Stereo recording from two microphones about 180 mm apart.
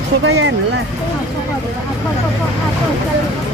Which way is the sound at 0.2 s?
90° right.